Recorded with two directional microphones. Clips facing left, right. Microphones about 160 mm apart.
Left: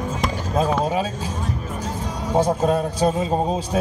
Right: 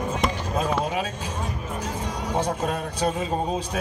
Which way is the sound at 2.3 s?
35° left (ahead or behind).